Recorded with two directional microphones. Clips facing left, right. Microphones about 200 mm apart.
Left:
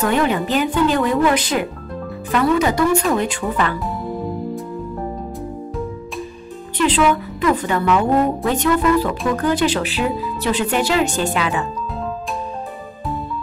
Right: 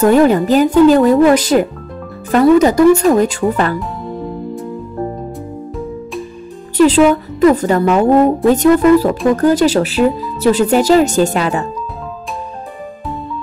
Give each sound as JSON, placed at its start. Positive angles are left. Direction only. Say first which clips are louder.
{"t": 0.0, "sound": "speech", "louder": "right 9 dB", "side_deg": -40}
{"t": 6.8, "sound": "speech", "louder": "right 8 dB", "side_deg": -40}